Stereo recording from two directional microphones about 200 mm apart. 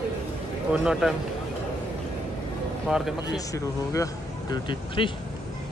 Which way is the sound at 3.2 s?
15° left (ahead or behind).